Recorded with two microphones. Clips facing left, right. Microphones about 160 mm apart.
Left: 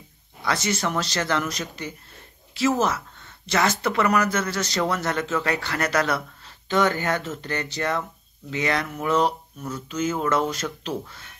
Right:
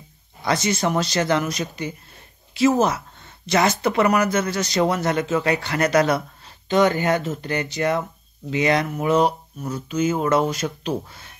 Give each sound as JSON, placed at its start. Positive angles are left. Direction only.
{"t": 0.5, "sound": "speech", "side_deg": -15}